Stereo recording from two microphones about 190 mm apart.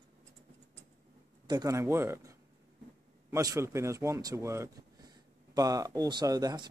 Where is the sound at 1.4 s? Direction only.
20° right (ahead or behind).